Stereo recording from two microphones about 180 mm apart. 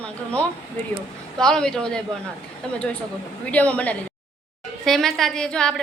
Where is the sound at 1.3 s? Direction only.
5° left (ahead or behind).